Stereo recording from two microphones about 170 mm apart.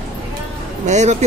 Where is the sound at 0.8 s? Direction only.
45° right (ahead or behind).